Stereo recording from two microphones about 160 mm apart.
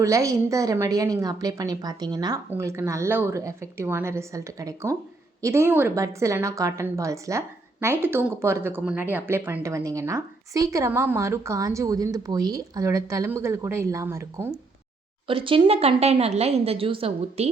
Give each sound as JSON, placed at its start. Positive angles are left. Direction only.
{"t": 0.0, "sound": "a woman's voice", "side_deg": -20}
{"t": 15.3, "sound": "a woman's voice", "side_deg": -35}